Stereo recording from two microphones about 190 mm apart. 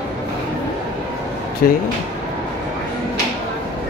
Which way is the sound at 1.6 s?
50° left (ahead or behind).